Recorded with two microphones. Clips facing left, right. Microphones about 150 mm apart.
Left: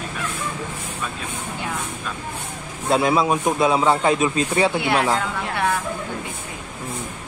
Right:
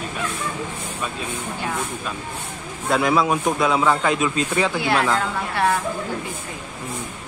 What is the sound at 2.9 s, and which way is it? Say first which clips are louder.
Speech: left 1 dB; 25° left (ahead or behind).